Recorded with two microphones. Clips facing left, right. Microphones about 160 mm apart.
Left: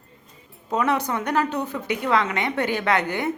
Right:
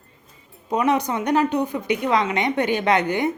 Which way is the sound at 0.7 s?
15° right (ahead or behind).